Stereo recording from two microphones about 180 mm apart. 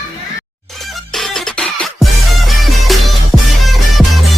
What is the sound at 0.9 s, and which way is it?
Music, centre (ahead or behind).